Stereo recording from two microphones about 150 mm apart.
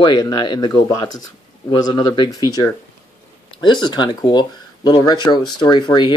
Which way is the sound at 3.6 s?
30° left (ahead or behind).